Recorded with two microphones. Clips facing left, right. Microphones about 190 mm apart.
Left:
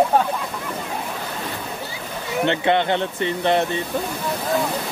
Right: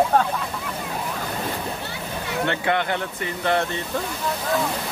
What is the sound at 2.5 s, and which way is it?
Speech, 25° left (ahead or behind).